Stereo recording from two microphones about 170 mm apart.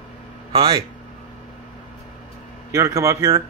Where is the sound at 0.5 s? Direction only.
30° right (ahead or behind).